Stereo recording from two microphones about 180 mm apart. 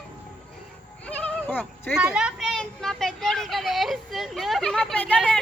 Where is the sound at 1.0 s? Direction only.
5° left (ahead or behind).